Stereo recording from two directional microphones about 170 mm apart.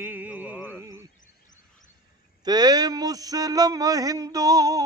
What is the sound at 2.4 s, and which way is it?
A man's voice, 25° right (ahead or behind).